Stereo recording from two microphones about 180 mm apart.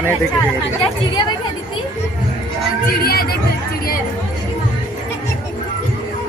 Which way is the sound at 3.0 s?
55° left (ahead or behind).